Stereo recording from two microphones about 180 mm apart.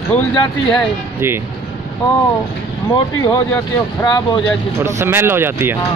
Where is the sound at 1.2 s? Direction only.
15° right (ahead or behind).